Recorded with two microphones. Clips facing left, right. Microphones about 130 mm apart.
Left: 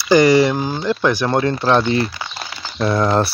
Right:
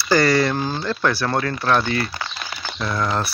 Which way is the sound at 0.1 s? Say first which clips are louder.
Left 5 dB; 15° left (ahead or behind).